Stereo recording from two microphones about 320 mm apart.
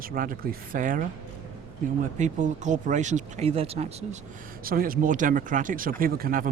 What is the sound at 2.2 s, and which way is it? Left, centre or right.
Speech, right.